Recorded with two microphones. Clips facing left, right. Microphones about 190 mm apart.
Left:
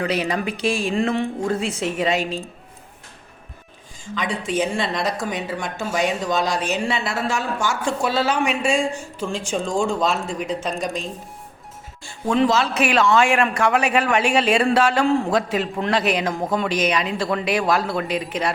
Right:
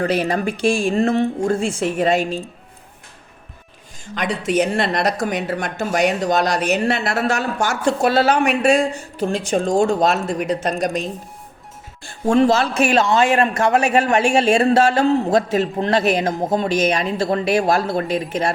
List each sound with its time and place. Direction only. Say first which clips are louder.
0.0 s a man's voice: right 3 dB; 50° right (ahead or behind)
4.0 s a woman's voice: right 3 dB; 70° right (ahead or behind)
12.3 s a man's voice: right 3 dB; 50° right (ahead or behind)